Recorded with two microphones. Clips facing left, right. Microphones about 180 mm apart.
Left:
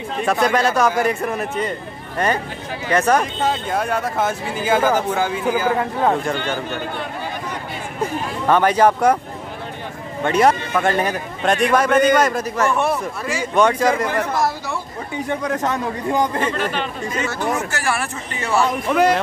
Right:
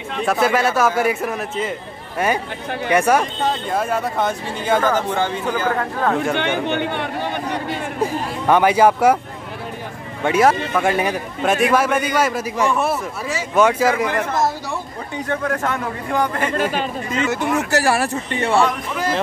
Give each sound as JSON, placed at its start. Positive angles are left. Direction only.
{"t": 0.2, "sound": "a man's voice", "side_deg": 0}
{"t": 6.3, "sound": "speech", "side_deg": -65}
{"t": 8.5, "sound": "a man's voice", "side_deg": -10}
{"t": 10.2, "sound": "a man's voice", "side_deg": -5}
{"t": 15.2, "sound": "speech", "side_deg": 15}
{"t": 17.6, "sound": "speech", "side_deg": -40}
{"t": 18.9, "sound": "speech", "side_deg": 70}